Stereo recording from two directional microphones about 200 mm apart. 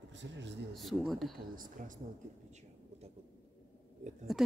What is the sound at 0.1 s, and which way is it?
Speech, 65° right (ahead or behind).